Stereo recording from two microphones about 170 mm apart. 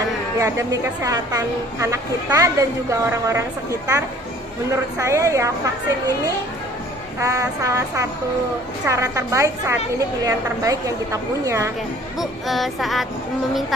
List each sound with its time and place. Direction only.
0.4 s a woman's voice: 20° right (ahead or behind)
12.2 s child singing: centre (ahead or behind)